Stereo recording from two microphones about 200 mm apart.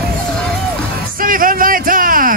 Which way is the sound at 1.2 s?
45° right (ahead or behind).